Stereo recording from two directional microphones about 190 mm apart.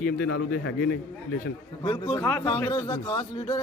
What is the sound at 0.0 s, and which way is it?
Speech, 60° left (ahead or behind).